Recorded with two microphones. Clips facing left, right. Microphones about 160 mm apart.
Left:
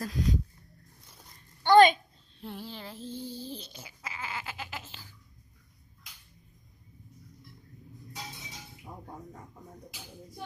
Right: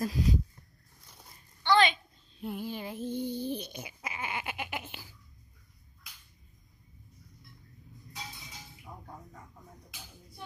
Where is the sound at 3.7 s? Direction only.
15° right (ahead or behind).